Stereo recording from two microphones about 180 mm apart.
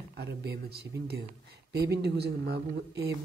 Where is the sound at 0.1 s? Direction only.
65° right (ahead or behind).